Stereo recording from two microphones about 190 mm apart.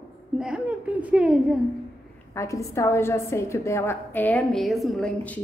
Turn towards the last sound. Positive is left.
turn(degrees=0)  # may be behind; listen again after turning